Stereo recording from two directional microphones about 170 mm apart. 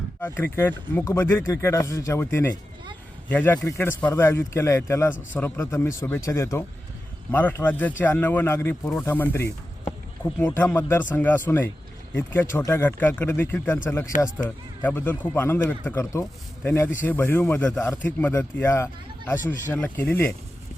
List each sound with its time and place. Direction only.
0.2 s speech: 15° left (ahead or behind)